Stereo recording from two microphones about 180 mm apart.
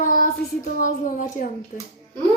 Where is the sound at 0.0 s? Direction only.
50° left (ahead or behind).